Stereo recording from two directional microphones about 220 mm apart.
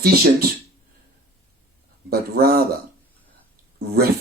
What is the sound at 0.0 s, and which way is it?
Speech, 40° right (ahead or behind).